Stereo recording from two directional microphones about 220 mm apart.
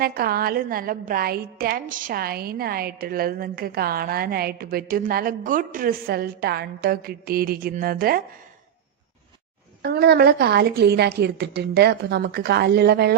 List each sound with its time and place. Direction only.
0.0 s a woman's voice: 45° right (ahead or behind)
9.8 s a woman's voice: 45° right (ahead or behind)